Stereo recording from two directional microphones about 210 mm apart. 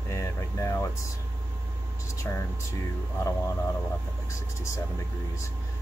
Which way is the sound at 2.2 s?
10° left (ahead or behind).